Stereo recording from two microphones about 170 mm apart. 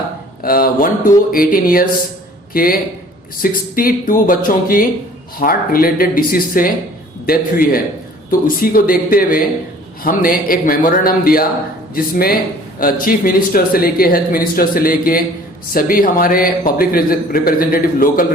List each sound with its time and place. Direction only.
0.4 s a man's voice: 60° left (ahead or behind)